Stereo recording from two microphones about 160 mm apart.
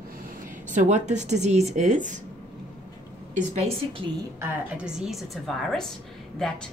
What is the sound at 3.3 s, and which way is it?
Speech, 50° right (ahead or behind).